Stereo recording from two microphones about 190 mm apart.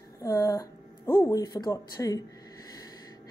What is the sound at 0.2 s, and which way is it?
Speech, 15° left (ahead or behind).